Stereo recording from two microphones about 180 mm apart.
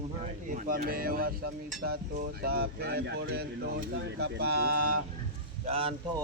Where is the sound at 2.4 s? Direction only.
60° right (ahead or behind).